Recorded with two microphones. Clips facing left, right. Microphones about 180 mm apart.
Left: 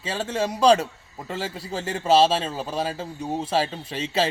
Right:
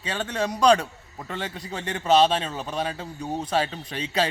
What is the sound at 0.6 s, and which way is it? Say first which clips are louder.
Speech: left 1 dB; 25° left (ahead or behind).